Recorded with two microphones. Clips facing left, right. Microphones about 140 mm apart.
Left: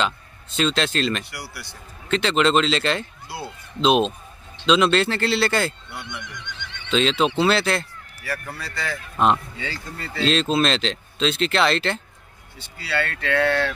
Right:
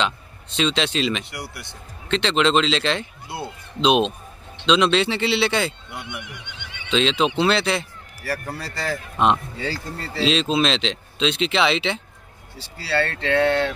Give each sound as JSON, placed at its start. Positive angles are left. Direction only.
{"t": 0.0, "sound": "a man's voice", "side_deg": 0}
{"t": 1.2, "sound": "speech", "side_deg": -20}
{"t": 2.0, "sound": "speech", "side_deg": 0}
{"t": 5.9, "sound": "neigh", "side_deg": -15}
{"t": 6.9, "sound": "speech", "side_deg": 0}
{"t": 8.2, "sound": "speech", "side_deg": -40}
{"t": 9.1, "sound": "speech", "side_deg": 0}
{"t": 9.6, "sound": "speech", "side_deg": -35}
{"t": 10.2, "sound": "speech", "side_deg": 0}
{"t": 12.5, "sound": "speech", "side_deg": -35}